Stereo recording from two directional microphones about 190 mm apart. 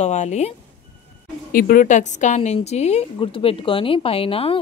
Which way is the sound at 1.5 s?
45° left (ahead or behind).